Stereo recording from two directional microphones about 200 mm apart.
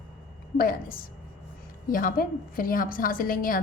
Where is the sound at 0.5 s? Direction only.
45° left (ahead or behind).